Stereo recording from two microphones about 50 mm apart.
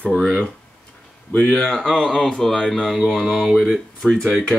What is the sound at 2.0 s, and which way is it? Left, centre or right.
Speech, centre.